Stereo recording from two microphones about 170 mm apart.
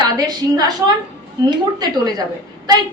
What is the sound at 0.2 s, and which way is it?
A woman's voice, 25° right (ahead or behind).